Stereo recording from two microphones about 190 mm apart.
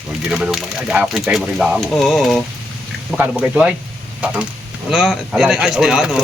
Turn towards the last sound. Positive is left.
turn(degrees=-5)  # may be behind; listen again after turning